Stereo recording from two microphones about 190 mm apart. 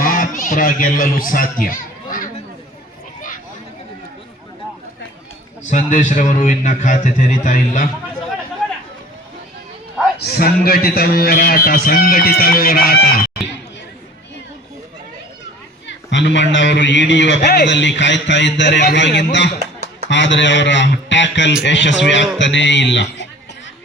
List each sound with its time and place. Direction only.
0.0 s a sound: 45° left (ahead or behind)
5.7 s a man's voice: 40° left (ahead or behind)
10.2 s a man's voice: 60° left (ahead or behind)
15.9 s a man's voice: 70° left (ahead or behind)